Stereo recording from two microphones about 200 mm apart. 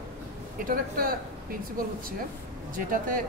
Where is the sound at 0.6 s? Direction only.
45° right (ahead or behind).